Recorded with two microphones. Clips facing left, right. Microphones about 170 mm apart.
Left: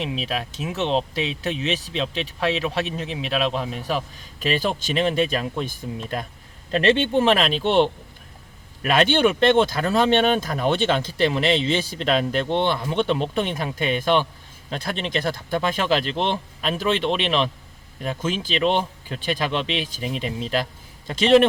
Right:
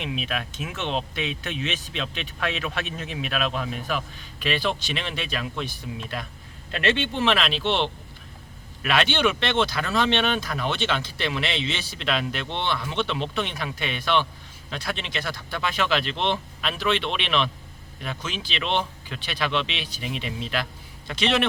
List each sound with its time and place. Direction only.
0.0 s speech: 30° left (ahead or behind)
7.0 s speech: 50° left (ahead or behind)